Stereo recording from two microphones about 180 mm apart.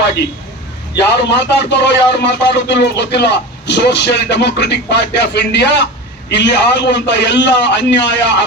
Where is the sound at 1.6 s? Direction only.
70° left (ahead or behind).